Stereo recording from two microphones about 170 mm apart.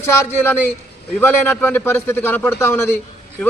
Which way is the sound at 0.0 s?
15° left (ahead or behind).